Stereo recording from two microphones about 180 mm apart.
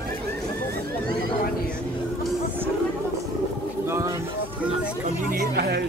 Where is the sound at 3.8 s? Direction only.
15° right (ahead or behind).